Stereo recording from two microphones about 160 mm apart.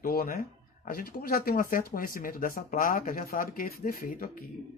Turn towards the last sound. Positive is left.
turn(degrees=60)  # may be behind; listen again after turning